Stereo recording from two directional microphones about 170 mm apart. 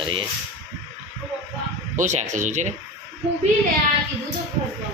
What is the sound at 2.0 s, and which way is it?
Speech, 45° right (ahead or behind).